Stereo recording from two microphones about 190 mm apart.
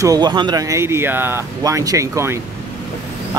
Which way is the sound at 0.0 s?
20° right (ahead or behind).